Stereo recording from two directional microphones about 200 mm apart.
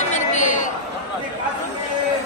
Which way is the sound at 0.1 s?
35° left (ahead or behind).